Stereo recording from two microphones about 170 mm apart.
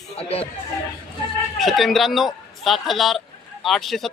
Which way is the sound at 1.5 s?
Centre (ahead or behind).